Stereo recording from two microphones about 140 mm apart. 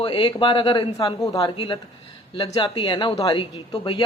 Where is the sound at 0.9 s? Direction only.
25° left (ahead or behind).